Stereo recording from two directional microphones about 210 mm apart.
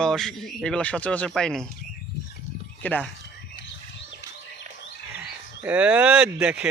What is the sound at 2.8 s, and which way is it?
Speech, 10° left (ahead or behind).